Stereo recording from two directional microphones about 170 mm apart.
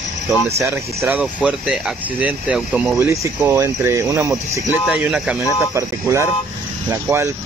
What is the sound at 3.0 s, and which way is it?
Speech, 15° right (ahead or behind).